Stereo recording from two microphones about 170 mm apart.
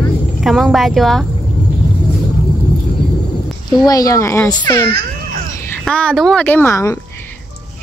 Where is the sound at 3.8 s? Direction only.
20° left (ahead or behind).